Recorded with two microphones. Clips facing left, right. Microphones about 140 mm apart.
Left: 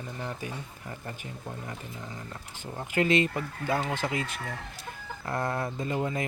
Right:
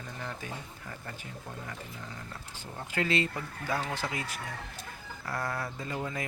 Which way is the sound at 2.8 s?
20° left (ahead or behind).